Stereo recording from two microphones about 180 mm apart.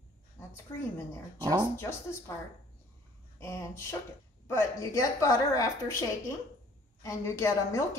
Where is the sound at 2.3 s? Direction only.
15° left (ahead or behind).